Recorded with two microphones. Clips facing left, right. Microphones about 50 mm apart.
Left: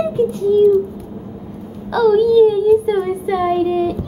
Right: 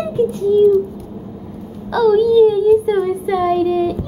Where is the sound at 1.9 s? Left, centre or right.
Centre.